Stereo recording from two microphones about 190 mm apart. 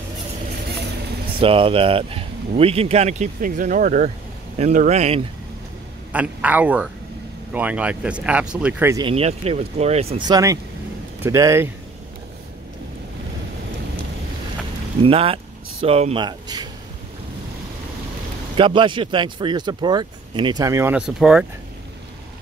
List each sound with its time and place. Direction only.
0.7 s vehicle: 60° right (ahead or behind)
1.4 s speech: 30° right (ahead or behind)
6.1 s speech: 10° right (ahead or behind)
8.9 s speech: 30° right (ahead or behind)
15.0 s speech: 30° right (ahead or behind)
18.6 s speech: 25° right (ahead or behind); by 21.5 s 5° right (ahead or behind)